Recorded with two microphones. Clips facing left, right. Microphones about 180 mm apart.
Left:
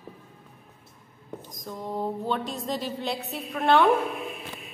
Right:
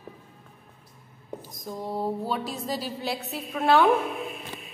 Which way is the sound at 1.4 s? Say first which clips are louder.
Right 1 dB; 10° right (ahead or behind).